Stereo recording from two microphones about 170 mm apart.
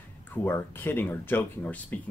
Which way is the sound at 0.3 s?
10° left (ahead or behind).